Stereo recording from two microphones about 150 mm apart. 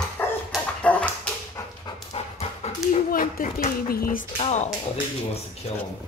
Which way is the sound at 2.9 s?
70° left (ahead or behind).